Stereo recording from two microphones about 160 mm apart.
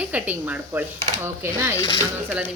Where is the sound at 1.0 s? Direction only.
45° right (ahead or behind).